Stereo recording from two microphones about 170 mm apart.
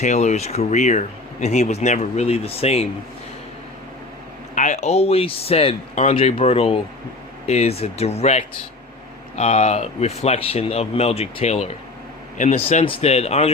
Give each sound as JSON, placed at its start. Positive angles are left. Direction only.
{"t": 0.0, "sound": "speech", "side_deg": 45}
{"t": 4.5, "sound": "speech", "side_deg": 45}